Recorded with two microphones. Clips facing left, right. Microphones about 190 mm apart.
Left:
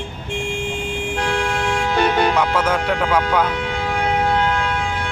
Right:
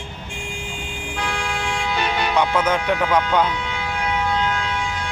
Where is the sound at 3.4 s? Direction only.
55° left (ahead or behind).